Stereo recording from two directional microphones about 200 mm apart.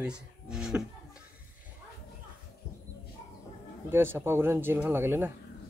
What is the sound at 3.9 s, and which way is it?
Speech, 10° right (ahead or behind).